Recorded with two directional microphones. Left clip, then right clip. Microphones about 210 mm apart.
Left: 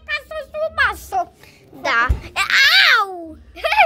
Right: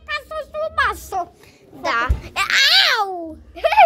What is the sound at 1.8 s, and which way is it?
Babbling, 5° left (ahead or behind).